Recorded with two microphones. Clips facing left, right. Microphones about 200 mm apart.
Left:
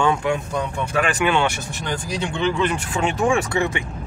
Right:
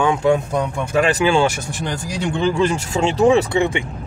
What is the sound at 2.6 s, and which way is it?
Speech, 25° right (ahead or behind).